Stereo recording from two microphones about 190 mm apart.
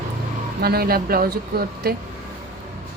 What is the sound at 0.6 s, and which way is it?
Speech, 55° right (ahead or behind).